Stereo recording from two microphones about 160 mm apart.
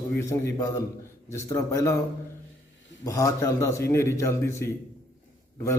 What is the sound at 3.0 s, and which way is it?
A man's voice, 20° left (ahead or behind).